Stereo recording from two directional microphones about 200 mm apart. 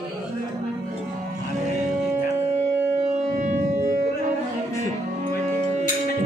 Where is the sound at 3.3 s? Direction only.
40° right (ahead or behind).